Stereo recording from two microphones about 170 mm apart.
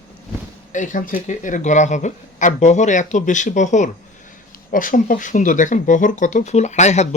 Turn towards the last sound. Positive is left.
turn(degrees=40)  # may be behind; listen again after turning